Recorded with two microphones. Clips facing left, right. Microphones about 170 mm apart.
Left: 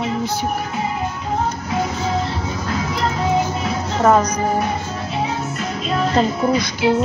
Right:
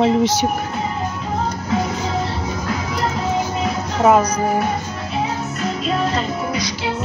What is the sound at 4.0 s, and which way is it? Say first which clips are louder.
Speech: right 1 dB; 10° right (ahead or behind).